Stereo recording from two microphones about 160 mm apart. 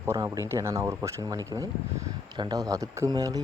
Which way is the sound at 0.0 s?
15° right (ahead or behind).